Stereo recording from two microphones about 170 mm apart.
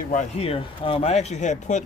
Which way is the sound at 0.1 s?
40° left (ahead or behind).